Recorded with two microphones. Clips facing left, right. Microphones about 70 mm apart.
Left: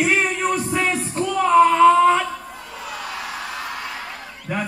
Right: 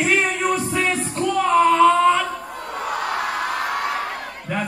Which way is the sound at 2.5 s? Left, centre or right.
Right.